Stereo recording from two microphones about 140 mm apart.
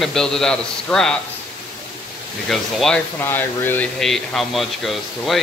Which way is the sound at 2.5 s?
Centre (ahead or behind).